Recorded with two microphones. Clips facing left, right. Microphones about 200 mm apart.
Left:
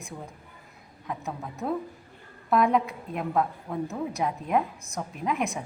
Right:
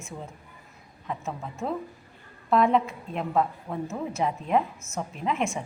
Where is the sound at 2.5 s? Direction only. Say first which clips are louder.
Right 1 dB; centre (ahead or behind).